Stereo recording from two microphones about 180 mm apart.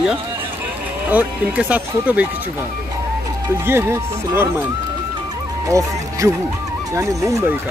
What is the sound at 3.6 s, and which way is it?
Speech, 15° right (ahead or behind).